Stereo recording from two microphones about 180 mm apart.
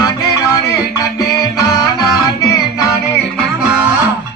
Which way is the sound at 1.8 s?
20° left (ahead or behind).